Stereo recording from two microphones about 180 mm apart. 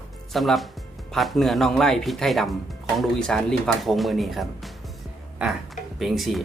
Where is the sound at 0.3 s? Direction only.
Centre (ahead or behind).